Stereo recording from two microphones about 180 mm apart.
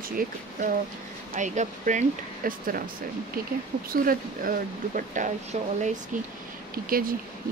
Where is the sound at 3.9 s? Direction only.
50° right (ahead or behind).